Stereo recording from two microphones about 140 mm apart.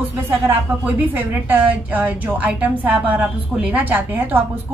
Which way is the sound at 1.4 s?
10° right (ahead or behind).